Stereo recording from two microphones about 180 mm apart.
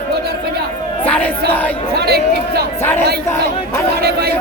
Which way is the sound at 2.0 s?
60° right (ahead or behind).